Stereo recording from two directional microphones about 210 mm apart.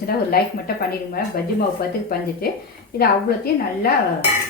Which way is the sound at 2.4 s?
45° left (ahead or behind).